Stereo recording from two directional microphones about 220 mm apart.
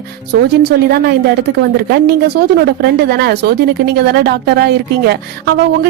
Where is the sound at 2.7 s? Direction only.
50° right (ahead or behind).